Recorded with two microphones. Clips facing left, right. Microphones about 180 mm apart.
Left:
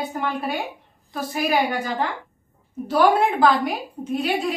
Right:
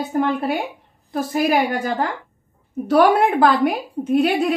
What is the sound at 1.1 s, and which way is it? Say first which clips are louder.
Speech: right 5 dB; 50° right (ahead or behind).